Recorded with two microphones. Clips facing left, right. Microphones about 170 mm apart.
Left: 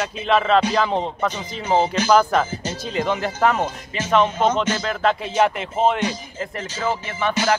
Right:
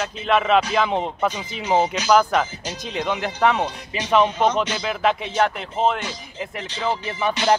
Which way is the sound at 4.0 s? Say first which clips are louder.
Even; 15° right (ahead or behind).